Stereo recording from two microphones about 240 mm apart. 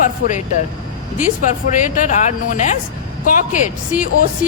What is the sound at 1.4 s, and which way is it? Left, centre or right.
Speech, left.